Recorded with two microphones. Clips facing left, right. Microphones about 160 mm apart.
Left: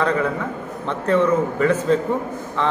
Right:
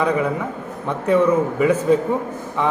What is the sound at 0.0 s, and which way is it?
Speech, 10° right (ahead or behind).